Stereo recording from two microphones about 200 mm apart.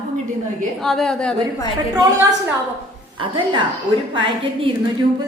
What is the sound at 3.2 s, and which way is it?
Speech, 25° right (ahead or behind).